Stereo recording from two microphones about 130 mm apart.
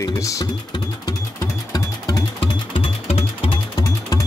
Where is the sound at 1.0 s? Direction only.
30° left (ahead or behind).